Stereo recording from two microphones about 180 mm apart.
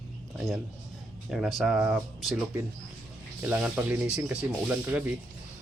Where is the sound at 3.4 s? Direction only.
10° right (ahead or behind).